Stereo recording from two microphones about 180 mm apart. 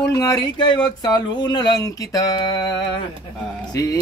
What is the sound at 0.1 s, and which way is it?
A man's voice, 20° left (ahead or behind).